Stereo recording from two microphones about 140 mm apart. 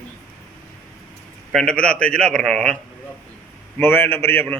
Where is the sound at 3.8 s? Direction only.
15° left (ahead or behind).